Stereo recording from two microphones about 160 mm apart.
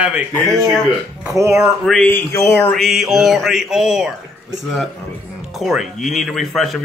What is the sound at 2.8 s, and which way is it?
Speech, centre (ahead or behind).